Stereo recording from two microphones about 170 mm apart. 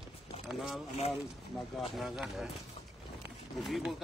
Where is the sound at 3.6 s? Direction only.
Centre (ahead or behind).